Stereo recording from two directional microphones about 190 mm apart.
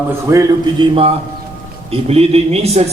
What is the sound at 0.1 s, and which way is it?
A man's voice, 15° right (ahead or behind).